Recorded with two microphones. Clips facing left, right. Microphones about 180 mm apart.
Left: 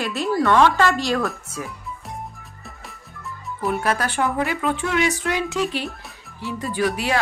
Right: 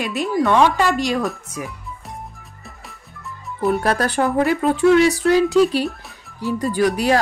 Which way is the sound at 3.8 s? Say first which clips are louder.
Right 3 dB; 35° right (ahead or behind).